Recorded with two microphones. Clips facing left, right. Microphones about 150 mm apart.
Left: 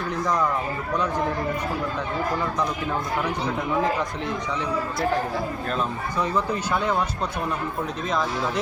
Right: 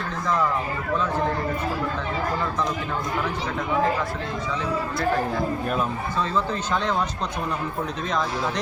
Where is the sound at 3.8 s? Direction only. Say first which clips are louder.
Right 1 dB; 20° left (ahead or behind).